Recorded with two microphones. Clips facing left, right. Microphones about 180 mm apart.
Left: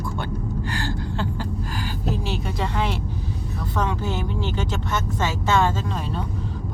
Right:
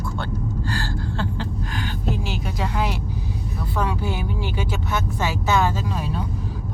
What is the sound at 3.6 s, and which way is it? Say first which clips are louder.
Speech: even; 10° right (ahead or behind).